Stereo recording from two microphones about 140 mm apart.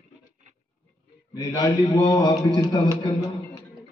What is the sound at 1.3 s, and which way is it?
A man's voice, 30° left (ahead or behind).